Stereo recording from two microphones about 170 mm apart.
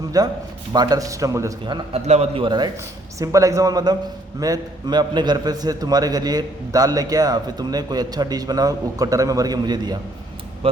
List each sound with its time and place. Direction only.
0.1 s a man's voice: 20° right (ahead or behind)